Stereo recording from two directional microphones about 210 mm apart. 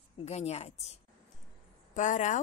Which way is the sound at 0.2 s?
30° left (ahead or behind).